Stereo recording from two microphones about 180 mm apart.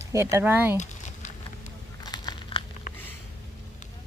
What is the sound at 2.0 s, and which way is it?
Crumpling, 25° left (ahead or behind).